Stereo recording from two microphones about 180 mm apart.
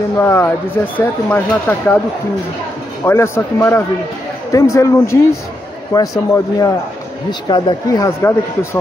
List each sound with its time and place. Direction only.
0.2 s speech: 15° left (ahead or behind)
3.1 s speech: 15° left (ahead or behind)